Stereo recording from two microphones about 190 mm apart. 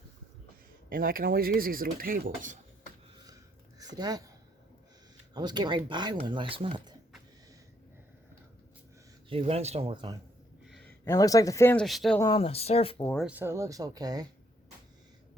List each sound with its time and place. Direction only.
0.9 s speech: 50° right (ahead or behind)
3.8 s speech: 20° right (ahead or behind)
5.3 s speech: 20° right (ahead or behind)
9.3 s speech: 30° right (ahead or behind)
10.7 s a sound: 5° left (ahead or behind)
11.0 s speech: 20° left (ahead or behind); by 12.2 s centre (ahead or behind)
12.2 s speech: 30° left (ahead or behind)
13.2 s speech: 10° right (ahead or behind)